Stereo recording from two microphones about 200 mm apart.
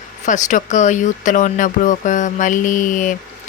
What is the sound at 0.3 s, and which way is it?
Speech, 40° left (ahead or behind).